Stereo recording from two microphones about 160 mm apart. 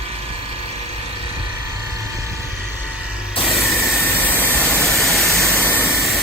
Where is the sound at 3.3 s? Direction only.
35° left (ahead or behind).